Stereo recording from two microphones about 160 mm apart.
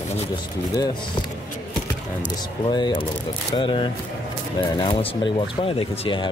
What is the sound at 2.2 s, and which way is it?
Speech, 25° left (ahead or behind).